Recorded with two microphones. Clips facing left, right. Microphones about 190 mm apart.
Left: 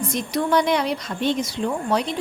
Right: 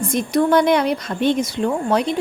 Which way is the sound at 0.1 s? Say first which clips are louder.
Right 6 dB; 55° right (ahead or behind).